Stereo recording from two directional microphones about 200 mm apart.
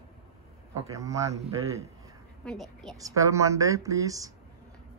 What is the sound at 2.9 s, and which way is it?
Speech, 15° right (ahead or behind).